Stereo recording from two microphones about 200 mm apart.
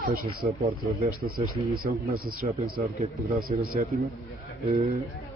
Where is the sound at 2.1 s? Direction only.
45° right (ahead or behind).